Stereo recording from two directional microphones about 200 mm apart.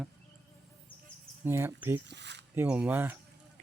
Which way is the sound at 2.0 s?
60° right (ahead or behind).